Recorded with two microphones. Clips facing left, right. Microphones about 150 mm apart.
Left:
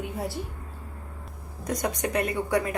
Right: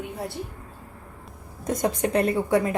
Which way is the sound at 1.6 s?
25° right (ahead or behind).